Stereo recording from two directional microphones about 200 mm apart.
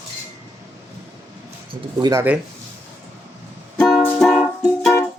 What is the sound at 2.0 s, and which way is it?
Speech, 20° right (ahead or behind).